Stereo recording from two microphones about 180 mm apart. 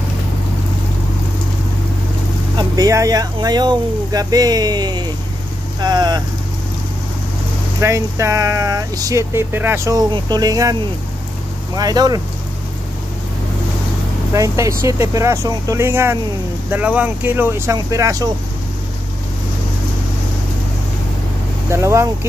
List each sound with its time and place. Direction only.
2.5 s speech: 20° right (ahead or behind)
7.8 s speech: 15° right (ahead or behind)
14.3 s speech: 15° right (ahead or behind)
21.6 s speech: 15° right (ahead or behind)